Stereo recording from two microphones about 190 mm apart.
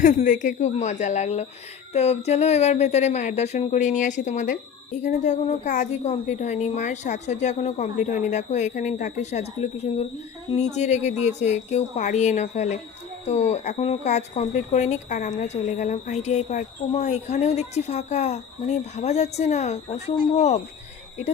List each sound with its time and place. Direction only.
0.0 s speech: 40° left (ahead or behind)